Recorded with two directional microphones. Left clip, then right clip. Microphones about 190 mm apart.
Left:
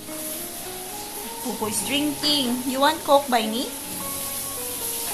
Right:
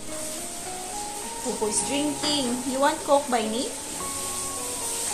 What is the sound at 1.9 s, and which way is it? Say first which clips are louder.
A woman's voice: left 8 dB; 15° left (ahead or behind).